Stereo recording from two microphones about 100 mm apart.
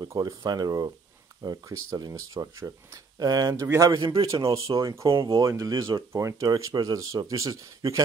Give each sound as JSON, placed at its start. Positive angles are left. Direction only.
{"t": 0.1, "sound": "speech", "side_deg": -35}
{"t": 3.6, "sound": "a man's voice", "side_deg": -25}
{"t": 3.9, "sound": "a man's voice", "side_deg": -55}
{"t": 4.6, "sound": "speech", "side_deg": -35}